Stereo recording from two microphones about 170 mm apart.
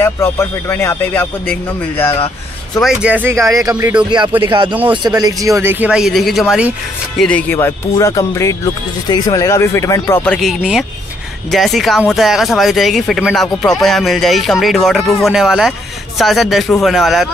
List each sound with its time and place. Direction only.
0.0 s speech: 15° left (ahead or behind)
2.8 s speech: 5° right (ahead or behind)
3.7 s speech: 5° right (ahead or behind)
4.9 s speech: 25° right (ahead or behind); by 10.2 s 15° left (ahead or behind)
10.2 s speech: 5° left (ahead or behind)